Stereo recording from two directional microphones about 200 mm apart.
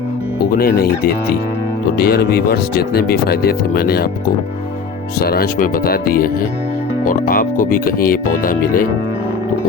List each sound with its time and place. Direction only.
0.5 s speech: 50° left (ahead or behind)
5.2 s speech: 50° left (ahead or behind)